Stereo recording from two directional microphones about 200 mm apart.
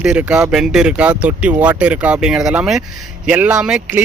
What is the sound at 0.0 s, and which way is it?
Speech, 5° right (ahead or behind).